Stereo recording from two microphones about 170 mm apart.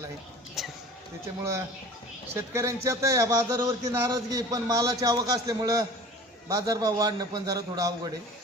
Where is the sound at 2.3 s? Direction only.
15° right (ahead or behind).